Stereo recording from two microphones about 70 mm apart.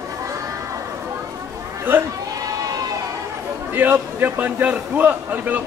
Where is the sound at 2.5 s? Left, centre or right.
Right.